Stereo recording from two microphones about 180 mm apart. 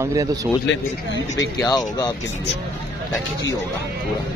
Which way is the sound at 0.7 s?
80° left.